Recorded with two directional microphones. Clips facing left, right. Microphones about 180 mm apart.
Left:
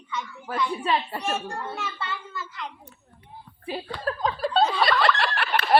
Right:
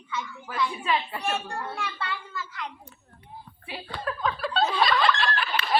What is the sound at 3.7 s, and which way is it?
Chuckle, 35° left (ahead or behind).